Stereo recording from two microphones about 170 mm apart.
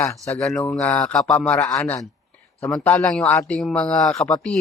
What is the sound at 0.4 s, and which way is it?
Speech, centre (ahead or behind).